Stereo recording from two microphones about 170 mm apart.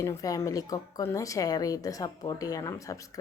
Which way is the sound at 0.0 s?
20° left (ahead or behind).